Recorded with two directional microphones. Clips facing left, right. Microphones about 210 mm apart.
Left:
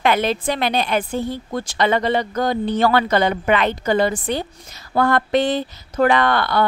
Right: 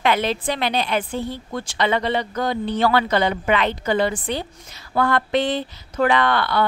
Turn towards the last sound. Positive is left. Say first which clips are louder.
# left 2 dB
turn(degrees=45)  # may be behind; listen again after turning